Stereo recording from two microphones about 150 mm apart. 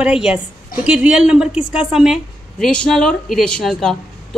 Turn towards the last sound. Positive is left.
turn(degrees=0)  # may be behind; listen again after turning